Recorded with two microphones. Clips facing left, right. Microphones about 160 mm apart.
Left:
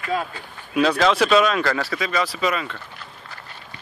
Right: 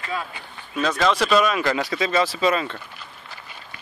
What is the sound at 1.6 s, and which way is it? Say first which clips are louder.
Speech: right 1 dB; 20° right (ahead or behind).